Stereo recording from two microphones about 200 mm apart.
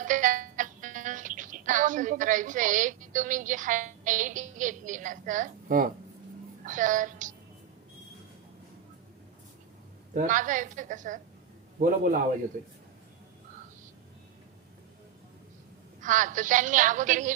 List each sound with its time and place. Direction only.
0.0 s speech: 40° right (ahead or behind)
10.2 s a woman's voice: 40° right (ahead or behind)
16.0 s a woman's voice: 40° right (ahead or behind)